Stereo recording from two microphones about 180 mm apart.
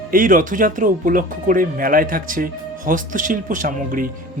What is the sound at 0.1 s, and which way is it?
Speech, 50° right (ahead or behind).